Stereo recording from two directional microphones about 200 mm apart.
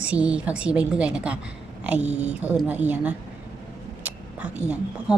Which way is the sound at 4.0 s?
5° right (ahead or behind).